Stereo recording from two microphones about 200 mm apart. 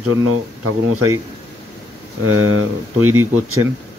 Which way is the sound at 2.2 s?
90° right.